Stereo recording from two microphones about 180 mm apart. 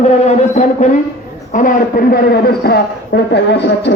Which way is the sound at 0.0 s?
40° left (ahead or behind).